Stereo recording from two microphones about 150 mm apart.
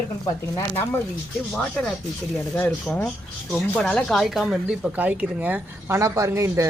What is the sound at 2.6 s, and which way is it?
Speech, 5° left (ahead or behind).